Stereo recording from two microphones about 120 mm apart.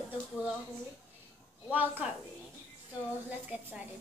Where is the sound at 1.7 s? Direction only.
15° right (ahead or behind).